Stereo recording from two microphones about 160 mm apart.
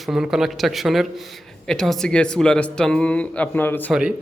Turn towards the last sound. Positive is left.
turn(degrees=-5)  # may be behind; listen again after turning